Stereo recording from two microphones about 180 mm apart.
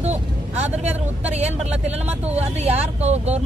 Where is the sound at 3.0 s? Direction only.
35° right (ahead or behind).